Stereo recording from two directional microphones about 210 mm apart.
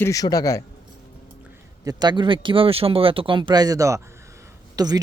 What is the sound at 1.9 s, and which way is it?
Speech, 20° right (ahead or behind).